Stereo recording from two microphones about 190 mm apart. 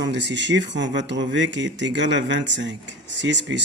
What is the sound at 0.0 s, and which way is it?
Speech, 65° right (ahead or behind).